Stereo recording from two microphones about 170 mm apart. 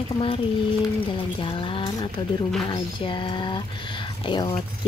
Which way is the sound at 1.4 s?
30° left (ahead or behind).